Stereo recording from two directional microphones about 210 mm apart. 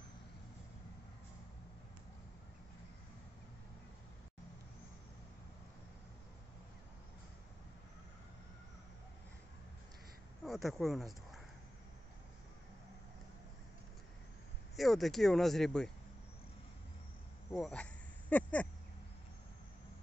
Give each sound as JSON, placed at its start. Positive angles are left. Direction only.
{"t": 10.4, "sound": "speech", "side_deg": 0}
{"t": 14.8, "sound": "speech", "side_deg": 0}
{"t": 17.5, "sound": "speech", "side_deg": 5}